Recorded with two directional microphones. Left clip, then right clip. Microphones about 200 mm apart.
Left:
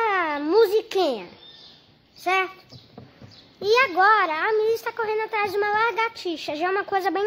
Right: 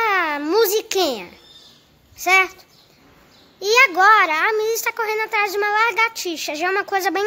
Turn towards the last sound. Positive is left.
turn(degrees=-15)  # may be behind; listen again after turning